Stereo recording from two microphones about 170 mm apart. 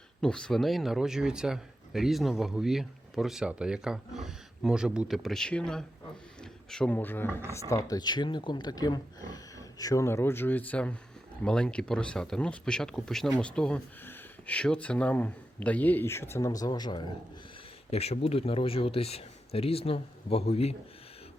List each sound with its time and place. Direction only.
0.2 s speech: 5° left (ahead or behind); by 17.1 s 25° left (ahead or behind)
17.9 s speech: 35° left (ahead or behind)